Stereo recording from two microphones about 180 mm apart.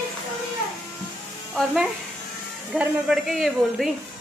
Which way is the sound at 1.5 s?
5° right (ahead or behind).